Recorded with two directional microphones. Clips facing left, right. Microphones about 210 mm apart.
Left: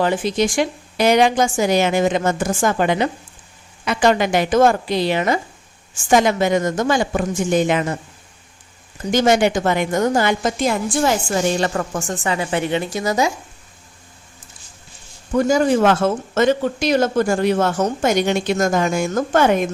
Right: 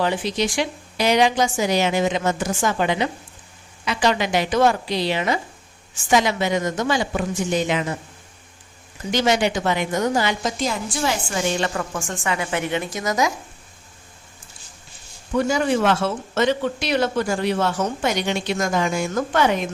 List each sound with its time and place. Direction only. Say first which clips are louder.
0.0 s a woman's voice: left 4 dB; 50° left (ahead or behind)
9.0 s a woman's voice: left 4 dB; 50° left (ahead or behind); by 13.3 s 30° left (ahead or behind)
15.4 s a woman's voice: left 4 dB; 40° left (ahead or behind)